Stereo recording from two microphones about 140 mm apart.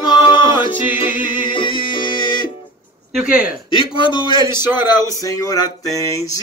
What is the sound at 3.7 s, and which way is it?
Speech, 35° left (ahead or behind).